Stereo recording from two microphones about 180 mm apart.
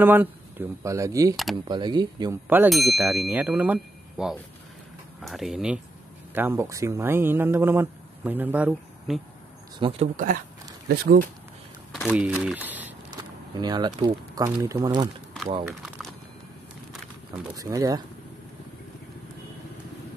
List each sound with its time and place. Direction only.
0.0 s speech: 10° right (ahead or behind)
1.3 s speech: centre (ahead or behind)
1.7 s speech: 25° right (ahead or behind)
2.5 s speech: 5° right (ahead or behind)
9.8 s speech: 30° right (ahead or behind)
10.1 s speech: 50° right (ahead or behind)
11.9 s speech: centre (ahead or behind)
12.4 s speech: 10° right (ahead or behind)
13.2 s speech: 25° right (ahead or behind)
17.6 s speech: 20° right (ahead or behind)